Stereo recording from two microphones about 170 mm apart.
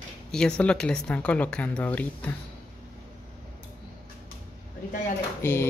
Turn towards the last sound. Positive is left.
turn(degrees=15)  # may be behind; listen again after turning